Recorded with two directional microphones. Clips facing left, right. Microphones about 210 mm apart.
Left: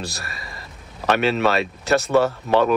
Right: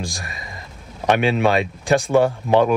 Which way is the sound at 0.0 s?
15° right (ahead or behind).